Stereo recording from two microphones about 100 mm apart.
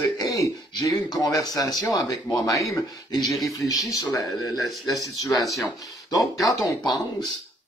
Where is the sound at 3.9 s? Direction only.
35° left (ahead or behind).